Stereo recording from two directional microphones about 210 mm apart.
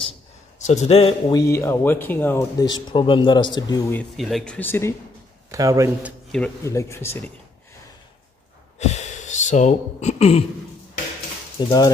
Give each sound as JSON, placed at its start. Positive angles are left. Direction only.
{"t": 0.6, "sound": "a man's voice", "side_deg": 35}
{"t": 1.5, "sound": "speech", "side_deg": 10}
{"t": 4.0, "sound": "speech", "side_deg": 0}
{"t": 5.5, "sound": "speech", "side_deg": -15}
{"t": 6.3, "sound": "speech", "side_deg": 10}
{"t": 8.7, "sound": "speech", "side_deg": 35}
{"t": 11.6, "sound": "speech", "side_deg": 20}